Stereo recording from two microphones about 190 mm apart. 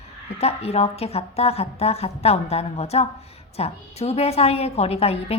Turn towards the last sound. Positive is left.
turn(degrees=30)  # may be behind; listen again after turning